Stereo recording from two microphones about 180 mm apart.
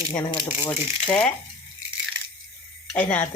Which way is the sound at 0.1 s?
20° left (ahead or behind).